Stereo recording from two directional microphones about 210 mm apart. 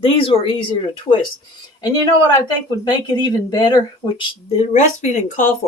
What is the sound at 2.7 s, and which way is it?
Speech, 20° left (ahead or behind).